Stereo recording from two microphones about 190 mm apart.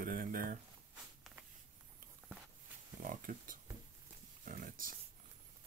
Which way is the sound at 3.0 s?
45° right (ahead or behind).